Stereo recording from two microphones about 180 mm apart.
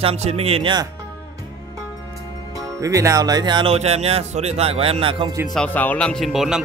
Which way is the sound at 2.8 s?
15° right (ahead or behind).